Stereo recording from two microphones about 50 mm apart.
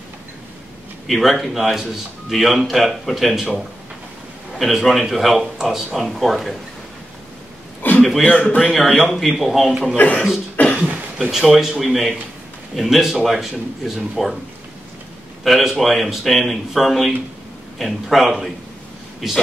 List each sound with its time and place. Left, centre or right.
1.0 s a man's voice: centre
4.7 s a man's voice: centre
7.8 s a sound: left
8.2 s speech: left
8.7 s a man's voice: centre
10.0 s beatboxing: left
10.7 s a sound: right
11.1 s a man's voice: centre
15.4 s a man's voice: centre